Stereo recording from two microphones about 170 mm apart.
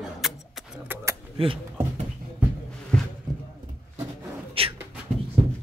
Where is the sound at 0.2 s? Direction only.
Centre (ahead or behind).